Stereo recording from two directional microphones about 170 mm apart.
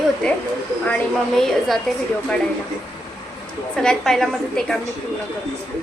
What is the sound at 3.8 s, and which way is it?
Speech, 5° left (ahead or behind).